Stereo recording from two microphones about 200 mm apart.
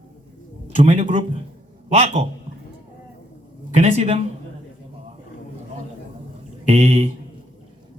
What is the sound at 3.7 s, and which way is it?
Speech, 30° right (ahead or behind).